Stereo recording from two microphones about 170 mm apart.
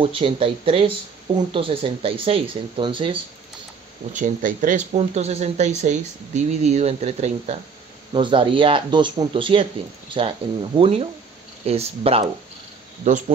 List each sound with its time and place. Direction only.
0.0 s speech: 30° right (ahead or behind)
4.1 s speech: 50° right (ahead or behind)
8.1 s speech: 30° right (ahead or behind); by 13.2 s 45° right (ahead or behind)